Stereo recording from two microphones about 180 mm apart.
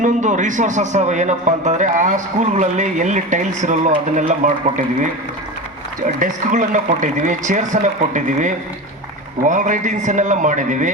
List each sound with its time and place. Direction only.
0.0 s a man's voice: 45° right (ahead or behind)
6.1 s a man's voice: 45° right (ahead or behind)